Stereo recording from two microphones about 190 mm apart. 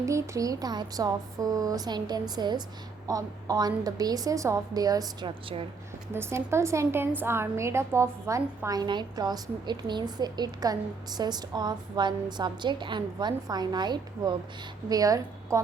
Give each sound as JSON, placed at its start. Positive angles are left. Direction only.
{"t": 0.0, "sound": "a woman's voice", "side_deg": -15}
{"t": 6.1, "sound": "a woman's voice", "side_deg": -15}